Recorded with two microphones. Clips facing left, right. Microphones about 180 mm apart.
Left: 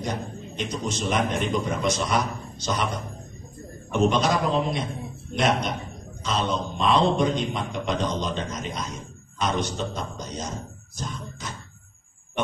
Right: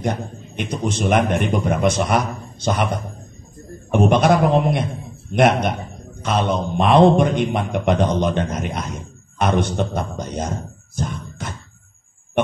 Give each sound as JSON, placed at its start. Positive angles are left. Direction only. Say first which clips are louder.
{"t": 0.0, "sound": "a man's voice", "louder": "right 6 dB", "side_deg": -55}
{"t": 11.0, "sound": "music", "louder": "right 7 dB", "side_deg": -55}